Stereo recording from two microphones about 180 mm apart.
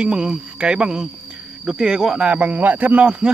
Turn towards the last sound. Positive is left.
turn(degrees=-5)  # may be behind; listen again after turning